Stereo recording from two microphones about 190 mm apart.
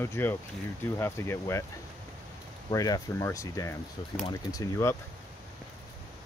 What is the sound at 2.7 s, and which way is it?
Speech, 20° left (ahead or behind).